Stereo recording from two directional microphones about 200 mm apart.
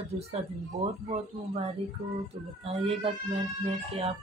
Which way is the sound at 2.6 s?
30° right (ahead or behind).